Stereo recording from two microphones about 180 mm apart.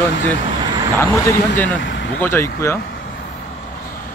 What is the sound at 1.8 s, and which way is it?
Vehicle, 85° left.